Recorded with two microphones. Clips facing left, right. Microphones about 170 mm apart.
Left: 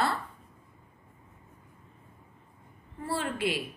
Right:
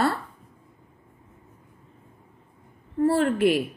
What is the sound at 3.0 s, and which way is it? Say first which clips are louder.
Speech: right 11 dB; 50° right (ahead or behind).